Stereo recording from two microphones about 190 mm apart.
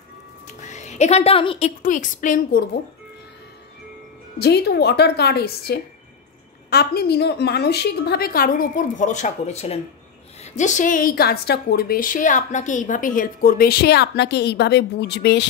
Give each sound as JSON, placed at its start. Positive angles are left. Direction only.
{"t": 0.6, "sound": "speech", "side_deg": 40}
{"t": 1.8, "sound": "a woman's voice", "side_deg": 40}
{"t": 4.4, "sound": "a woman's voice", "side_deg": 60}